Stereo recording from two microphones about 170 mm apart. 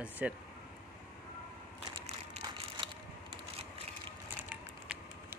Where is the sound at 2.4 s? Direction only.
30° right (ahead or behind).